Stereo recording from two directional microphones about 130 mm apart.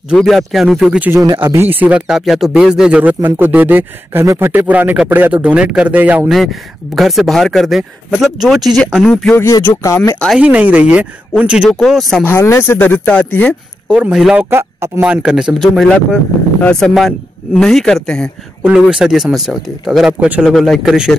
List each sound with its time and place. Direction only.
0.1 s speech: centre (ahead or behind)
1.1 s speech: 25° right (ahead or behind)
7.0 s speech: centre (ahead or behind)
9.4 s speech: 15° left (ahead or behind)
10.4 s speech: 10° right (ahead or behind)
12.3 s speech: 20° left (ahead or behind)
13.8 s speech: 10° right (ahead or behind)
14.3 s speech: 15° right (ahead or behind); by 16.2 s 5° left (ahead or behind)
17.6 s speech: 5° left (ahead or behind)
18.6 s speech: 5° right (ahead or behind)